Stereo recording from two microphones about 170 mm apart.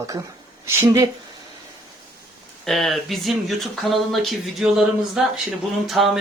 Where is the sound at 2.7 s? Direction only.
Centre (ahead or behind).